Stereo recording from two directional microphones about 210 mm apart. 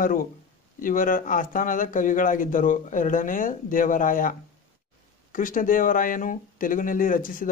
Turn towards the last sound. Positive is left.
turn(degrees=40)  # may be behind; listen again after turning